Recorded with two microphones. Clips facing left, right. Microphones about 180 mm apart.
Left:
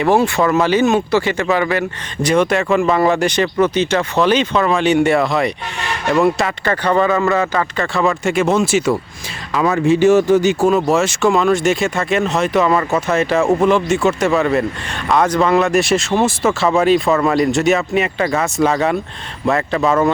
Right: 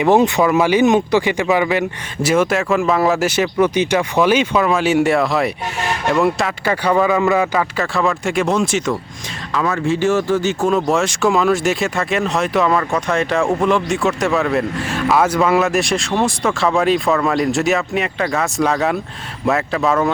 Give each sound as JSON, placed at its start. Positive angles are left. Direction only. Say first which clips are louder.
{"t": 0.0, "sound": "speech", "louder": "right 1 dB", "side_deg": -20}
{"t": 2.2, "sound": "speech", "louder": "left 1 dB", "side_deg": -5}
{"t": 9.6, "sound": "speech", "louder": "left 4 dB", "side_deg": 20}
{"t": 10.7, "sound": "speech", "louder": "left 2 dB", "side_deg": 5}